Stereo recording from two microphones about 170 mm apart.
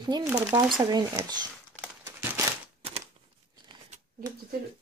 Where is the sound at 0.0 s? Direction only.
20° right (ahead or behind).